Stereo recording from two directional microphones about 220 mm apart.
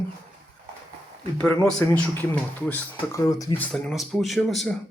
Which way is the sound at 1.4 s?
5° left (ahead or behind).